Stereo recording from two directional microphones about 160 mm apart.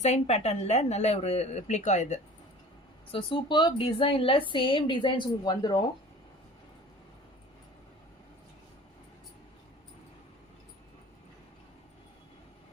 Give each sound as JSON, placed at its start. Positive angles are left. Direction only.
{"t": 0.0, "sound": "speech", "side_deg": 45}
{"t": 3.1, "sound": "a woman's voice", "side_deg": 35}